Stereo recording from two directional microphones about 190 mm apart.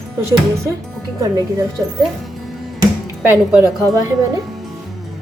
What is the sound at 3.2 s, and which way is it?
Speech, 10° right (ahead or behind).